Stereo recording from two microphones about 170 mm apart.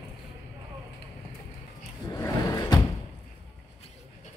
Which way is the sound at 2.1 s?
20° left (ahead or behind).